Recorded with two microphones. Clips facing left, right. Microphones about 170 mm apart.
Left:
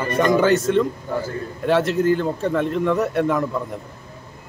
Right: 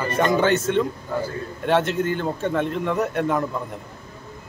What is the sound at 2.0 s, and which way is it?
Speech, 40° left (ahead or behind).